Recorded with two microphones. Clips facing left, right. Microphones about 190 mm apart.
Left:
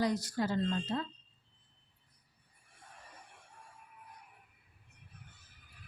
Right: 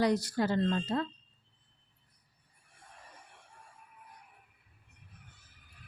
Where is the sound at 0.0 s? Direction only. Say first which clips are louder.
Right 4 dB; 70° right (ahead or behind).